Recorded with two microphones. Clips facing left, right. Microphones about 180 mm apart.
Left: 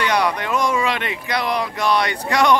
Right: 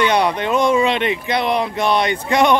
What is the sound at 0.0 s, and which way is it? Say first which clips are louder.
Speech: right 3 dB; 25° right (ahead or behind).